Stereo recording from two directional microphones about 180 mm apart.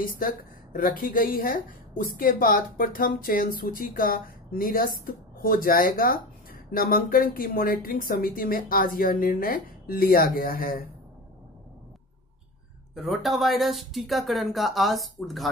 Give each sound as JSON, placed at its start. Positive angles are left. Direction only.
{"t": 0.0, "sound": "speech", "side_deg": 55}
{"t": 12.9, "sound": "speech", "side_deg": 0}